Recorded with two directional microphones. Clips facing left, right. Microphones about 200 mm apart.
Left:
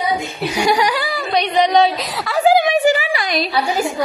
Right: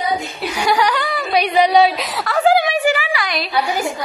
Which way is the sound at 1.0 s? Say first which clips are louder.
Right 1 dB; 5° right (ahead or behind).